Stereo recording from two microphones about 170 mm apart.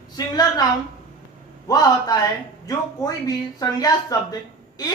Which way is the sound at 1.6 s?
20° left (ahead or behind).